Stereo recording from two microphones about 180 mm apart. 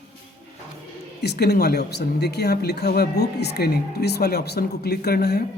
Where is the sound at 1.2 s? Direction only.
65° left (ahead or behind).